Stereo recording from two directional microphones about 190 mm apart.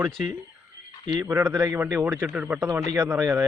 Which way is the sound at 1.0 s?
25° right (ahead or behind).